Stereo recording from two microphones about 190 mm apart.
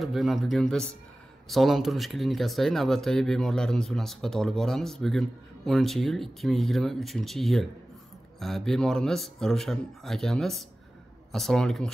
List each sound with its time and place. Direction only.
0.0 s speech: centre (ahead or behind)